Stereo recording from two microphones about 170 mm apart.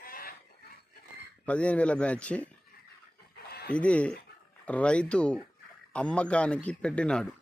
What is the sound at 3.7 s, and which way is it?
Speech, 5° left (ahead or behind).